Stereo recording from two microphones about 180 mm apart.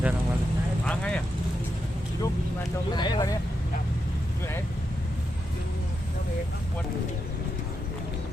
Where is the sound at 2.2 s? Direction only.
20° left (ahead or behind).